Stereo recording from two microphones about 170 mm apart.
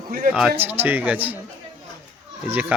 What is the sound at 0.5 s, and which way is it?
Speech, 10° right (ahead or behind).